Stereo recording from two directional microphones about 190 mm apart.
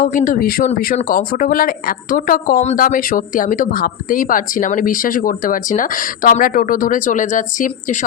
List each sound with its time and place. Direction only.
0.0 s speech: 45° left (ahead or behind)